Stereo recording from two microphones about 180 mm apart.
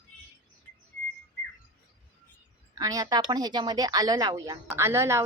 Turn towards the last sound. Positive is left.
turn(degrees=-15)  # may be behind; listen again after turning